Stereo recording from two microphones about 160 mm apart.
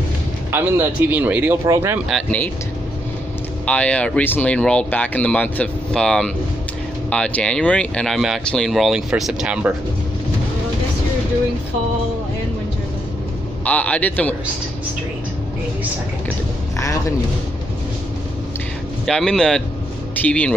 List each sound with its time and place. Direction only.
0.5 s speech: 15° right (ahead or behind)
2.0 s speech: 5° left (ahead or behind)
3.6 s speech: 10° left (ahead or behind)
13.7 s speech: 10° left (ahead or behind)
16.7 s a man's voice: 20° left (ahead or behind)
19.0 s speech: 5° left (ahead or behind)